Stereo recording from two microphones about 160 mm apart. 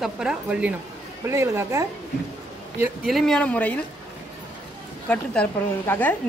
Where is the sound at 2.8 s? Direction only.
Centre (ahead or behind).